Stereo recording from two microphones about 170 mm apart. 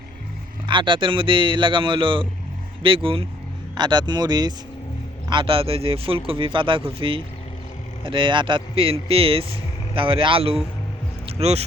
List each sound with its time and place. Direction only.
0.7 s a man's voice: 30° right (ahead or behind)